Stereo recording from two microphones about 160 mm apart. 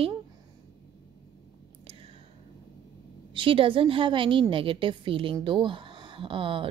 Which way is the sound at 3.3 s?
35° right (ahead or behind).